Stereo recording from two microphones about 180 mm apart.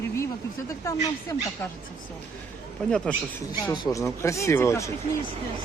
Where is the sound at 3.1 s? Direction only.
5° left (ahead or behind).